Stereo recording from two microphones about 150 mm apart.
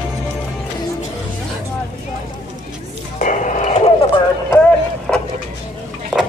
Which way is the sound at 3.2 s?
55° left (ahead or behind).